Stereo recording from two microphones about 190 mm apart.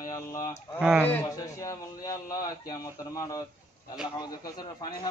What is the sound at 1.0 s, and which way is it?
A man's voice, 15° left (ahead or behind).